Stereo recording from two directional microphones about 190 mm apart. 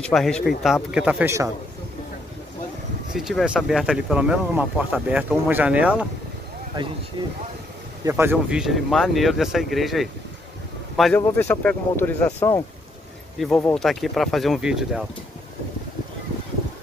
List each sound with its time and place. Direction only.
0.0 s speech: 5° left (ahead or behind); by 1.5 s 15° right (ahead or behind)
3.1 s speech: centre (ahead or behind)
7.2 s speech: 25° right (ahead or behind)
8.0 s speech: 15° right (ahead or behind)
11.1 s speech: 10° left (ahead or behind)